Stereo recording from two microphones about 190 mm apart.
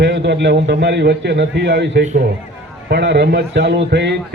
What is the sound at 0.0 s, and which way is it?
A man's voice, 65° right (ahead or behind).